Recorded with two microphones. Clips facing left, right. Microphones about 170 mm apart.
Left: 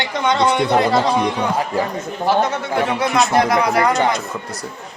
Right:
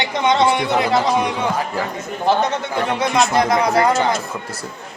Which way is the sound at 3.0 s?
Centre (ahead or behind).